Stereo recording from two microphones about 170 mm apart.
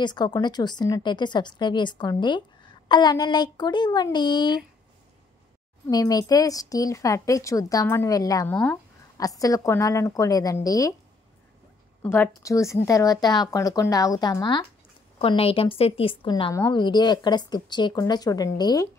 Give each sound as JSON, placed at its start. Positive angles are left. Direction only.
{"t": 0.0, "sound": "speech", "side_deg": 25}
{"t": 5.9, "sound": "speech", "side_deg": 20}
{"t": 12.0, "sound": "a woman's voice", "side_deg": 15}